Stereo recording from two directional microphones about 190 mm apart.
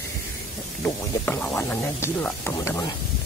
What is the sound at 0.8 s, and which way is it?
Speech, 10° left (ahead or behind).